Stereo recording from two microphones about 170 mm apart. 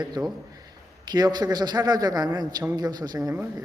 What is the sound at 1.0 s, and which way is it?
A man's voice, 25° right (ahead or behind).